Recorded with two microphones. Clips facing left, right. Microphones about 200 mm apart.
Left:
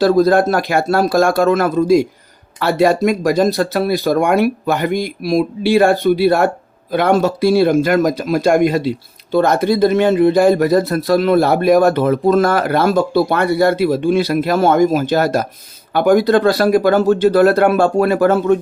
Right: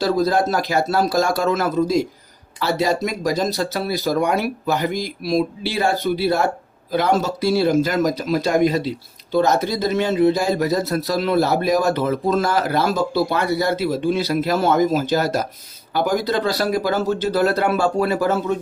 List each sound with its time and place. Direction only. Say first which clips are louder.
0.0 s speech: left 7 dB; 55° left (ahead or behind)